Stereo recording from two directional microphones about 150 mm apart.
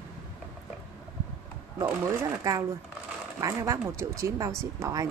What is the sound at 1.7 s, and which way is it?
Speech, 20° right (ahead or behind).